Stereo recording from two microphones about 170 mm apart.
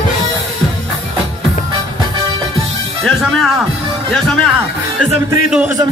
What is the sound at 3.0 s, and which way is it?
Speech, centre (ahead or behind).